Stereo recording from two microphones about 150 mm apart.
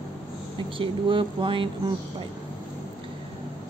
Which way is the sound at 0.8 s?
35° right (ahead or behind).